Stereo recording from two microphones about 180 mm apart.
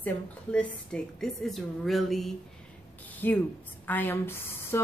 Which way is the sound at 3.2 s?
10° left (ahead or behind).